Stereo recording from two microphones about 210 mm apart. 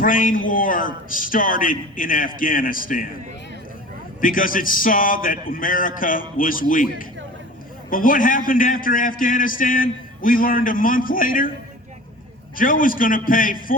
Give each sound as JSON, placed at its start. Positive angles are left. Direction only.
{"t": 0.0, "sound": "a man's voice", "side_deg": 40}
{"t": 4.2, "sound": "a man's voice", "side_deg": 40}
{"t": 12.5, "sound": "a man's voice", "side_deg": 40}